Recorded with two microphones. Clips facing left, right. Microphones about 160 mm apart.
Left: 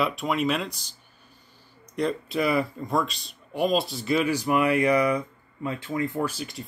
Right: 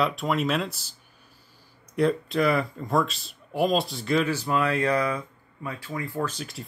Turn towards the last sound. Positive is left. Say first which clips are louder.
# left 2 dB
turn(degrees=0)  # may be behind; listen again after turning